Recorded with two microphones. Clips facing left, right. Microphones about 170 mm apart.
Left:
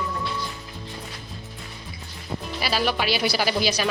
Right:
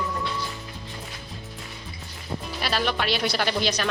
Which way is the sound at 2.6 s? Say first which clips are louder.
Left 2 dB; 5° left (ahead or behind).